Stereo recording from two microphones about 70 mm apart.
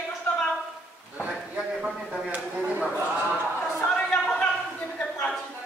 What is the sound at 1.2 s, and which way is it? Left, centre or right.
Speech, centre.